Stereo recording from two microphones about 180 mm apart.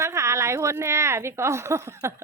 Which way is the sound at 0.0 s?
15° right (ahead or behind).